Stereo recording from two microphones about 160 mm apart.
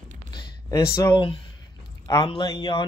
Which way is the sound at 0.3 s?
25° left (ahead or behind).